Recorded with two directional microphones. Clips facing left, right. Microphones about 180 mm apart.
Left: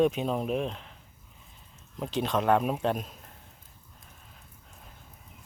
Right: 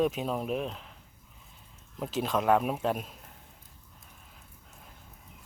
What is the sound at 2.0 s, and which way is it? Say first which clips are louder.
Speech: left 1 dB; 5° right (ahead or behind).